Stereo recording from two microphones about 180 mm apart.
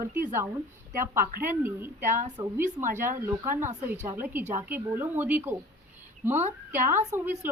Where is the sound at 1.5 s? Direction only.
10° right (ahead or behind).